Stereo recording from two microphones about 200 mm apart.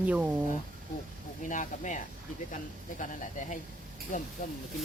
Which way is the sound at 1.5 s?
40° left (ahead or behind).